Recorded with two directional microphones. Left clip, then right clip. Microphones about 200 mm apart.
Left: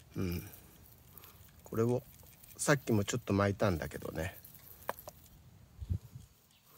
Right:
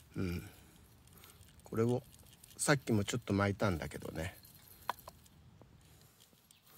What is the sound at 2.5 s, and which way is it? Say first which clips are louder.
Speech: left 2 dB; 15° left (ahead or behind).